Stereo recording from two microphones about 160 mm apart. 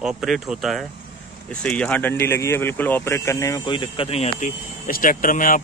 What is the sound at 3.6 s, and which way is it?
Speech, 30° left (ahead or behind).